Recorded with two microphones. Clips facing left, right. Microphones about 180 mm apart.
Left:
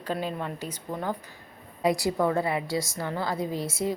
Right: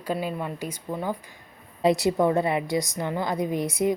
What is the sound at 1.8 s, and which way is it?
A woman's voice, 20° right (ahead or behind).